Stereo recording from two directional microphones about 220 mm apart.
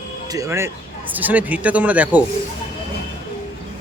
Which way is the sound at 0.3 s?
15° right (ahead or behind).